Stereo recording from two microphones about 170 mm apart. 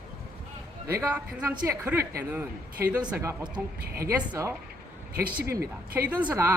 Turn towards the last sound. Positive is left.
turn(degrees=-10)  # may be behind; listen again after turning